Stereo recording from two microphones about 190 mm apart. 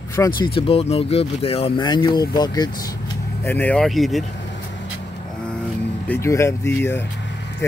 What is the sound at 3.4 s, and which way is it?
Speech, 10° left (ahead or behind).